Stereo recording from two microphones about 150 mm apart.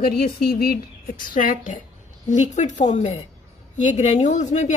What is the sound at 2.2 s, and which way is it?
A woman's voice, 50° left (ahead or behind).